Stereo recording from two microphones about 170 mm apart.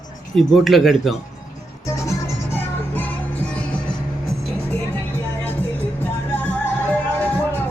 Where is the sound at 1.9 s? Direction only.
20° left (ahead or behind).